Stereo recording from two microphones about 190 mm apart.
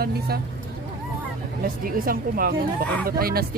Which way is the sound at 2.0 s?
50° right (ahead or behind).